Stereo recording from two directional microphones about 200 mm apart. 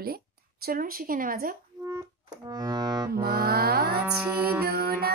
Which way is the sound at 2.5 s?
20° right (ahead or behind).